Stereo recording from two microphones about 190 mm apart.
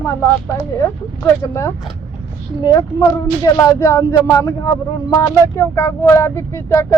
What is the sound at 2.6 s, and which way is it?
Speech, 20° left (ahead or behind).